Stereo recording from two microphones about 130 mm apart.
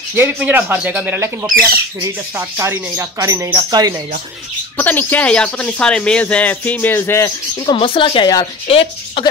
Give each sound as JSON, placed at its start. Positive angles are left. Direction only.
{"t": 0.1, "sound": "speech", "side_deg": -15}
{"t": 4.7, "sound": "speech", "side_deg": 15}